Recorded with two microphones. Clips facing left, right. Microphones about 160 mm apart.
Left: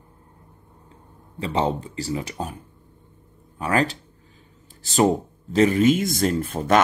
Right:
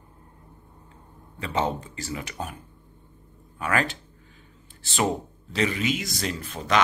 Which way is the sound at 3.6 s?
35° left (ahead or behind).